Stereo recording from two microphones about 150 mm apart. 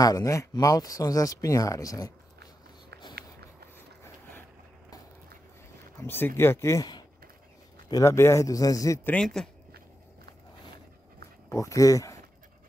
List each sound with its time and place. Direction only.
0.0 s speech: 25° left (ahead or behind)
3.7 s a sound: 15° left (ahead or behind)
5.9 s speech: 15° left (ahead or behind)
9.1 s speech: 5° left (ahead or behind)
11.4 s speech: 20° left (ahead or behind)